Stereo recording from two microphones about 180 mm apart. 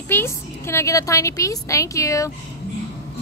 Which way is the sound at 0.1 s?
15° left (ahead or behind).